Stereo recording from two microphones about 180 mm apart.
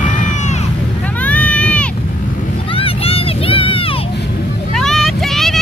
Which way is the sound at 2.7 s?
30° left (ahead or behind).